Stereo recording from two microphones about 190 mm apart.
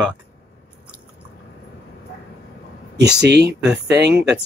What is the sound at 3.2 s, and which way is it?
Speech, 65° right (ahead or behind).